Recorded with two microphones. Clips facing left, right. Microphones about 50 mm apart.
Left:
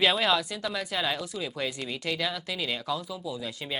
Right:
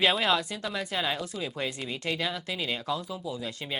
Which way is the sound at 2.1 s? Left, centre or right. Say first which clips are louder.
Even; centre.